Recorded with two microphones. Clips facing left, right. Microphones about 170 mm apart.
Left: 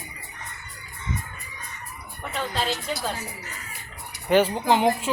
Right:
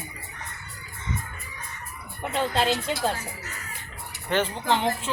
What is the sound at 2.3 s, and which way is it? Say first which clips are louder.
Speech: right 4 dB; 25° right (ahead or behind).